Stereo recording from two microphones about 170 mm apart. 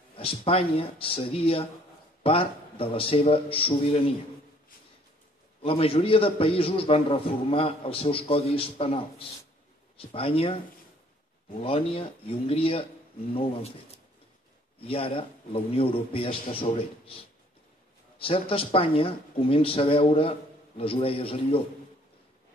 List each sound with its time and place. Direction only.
0.2 s speech: 35° left (ahead or behind)
5.6 s speech: 35° left (ahead or behind)
10.1 s speech: 35° left (ahead or behind)
11.6 s speech: 35° left (ahead or behind)
18.1 s speech: 35° left (ahead or behind)